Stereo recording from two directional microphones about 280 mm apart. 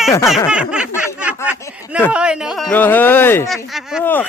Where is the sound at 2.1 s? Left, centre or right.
Centre.